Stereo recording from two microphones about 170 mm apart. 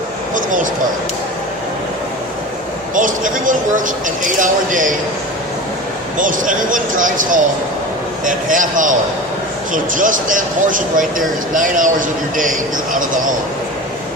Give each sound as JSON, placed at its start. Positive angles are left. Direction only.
{"t": 0.3, "sound": "a sound", "side_deg": -50}
{"t": 2.9, "sound": "speech", "side_deg": -50}
{"t": 6.1, "sound": "speech", "side_deg": -50}